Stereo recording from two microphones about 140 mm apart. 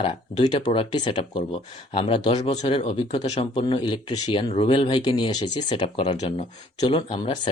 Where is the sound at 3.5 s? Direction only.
35° left (ahead or behind).